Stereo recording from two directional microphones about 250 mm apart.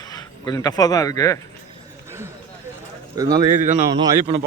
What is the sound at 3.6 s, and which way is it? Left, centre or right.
Speech, right.